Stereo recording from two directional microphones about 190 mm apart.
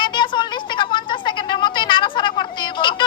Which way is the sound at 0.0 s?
25° left (ahead or behind).